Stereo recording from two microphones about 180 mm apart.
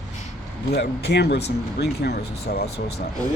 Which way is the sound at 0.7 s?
65° left (ahead or behind).